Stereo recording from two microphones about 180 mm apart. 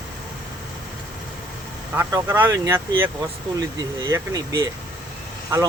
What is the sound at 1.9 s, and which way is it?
Speech, 10° right (ahead or behind).